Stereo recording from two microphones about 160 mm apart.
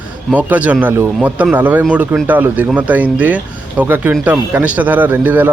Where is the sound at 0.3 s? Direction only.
10° right (ahead or behind).